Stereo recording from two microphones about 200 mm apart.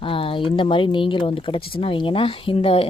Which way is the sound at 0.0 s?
25° left (ahead or behind).